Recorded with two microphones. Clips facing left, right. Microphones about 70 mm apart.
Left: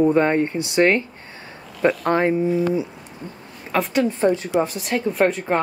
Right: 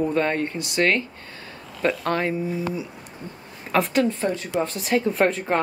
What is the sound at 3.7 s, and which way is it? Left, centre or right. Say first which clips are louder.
Speech: even; centre.